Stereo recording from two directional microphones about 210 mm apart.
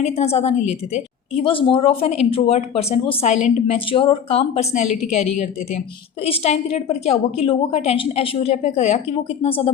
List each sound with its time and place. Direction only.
0.0 s a woman's voice: 30° left (ahead or behind)